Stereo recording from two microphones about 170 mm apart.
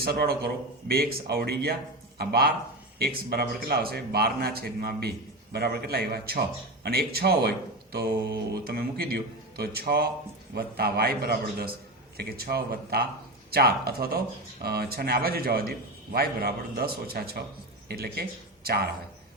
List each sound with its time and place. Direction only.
0.0 s a man's voice: 65° right (ahead or behind)